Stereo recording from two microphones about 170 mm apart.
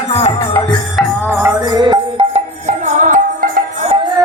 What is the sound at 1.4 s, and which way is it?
Music, 25° right (ahead or behind).